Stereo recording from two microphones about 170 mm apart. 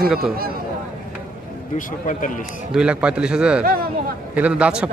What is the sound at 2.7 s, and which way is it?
Speech, 5° right (ahead or behind).